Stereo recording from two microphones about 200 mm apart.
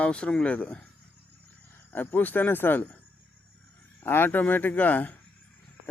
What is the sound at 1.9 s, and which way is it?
Speech, 10° left (ahead or behind).